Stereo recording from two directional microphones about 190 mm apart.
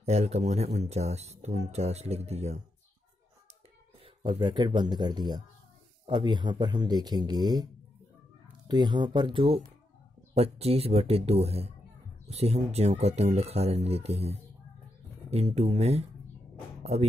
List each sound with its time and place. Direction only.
0.0 s speech: 35° right (ahead or behind)
4.0 s speech: 25° right (ahead or behind)
8.6 s speech: 25° right (ahead or behind)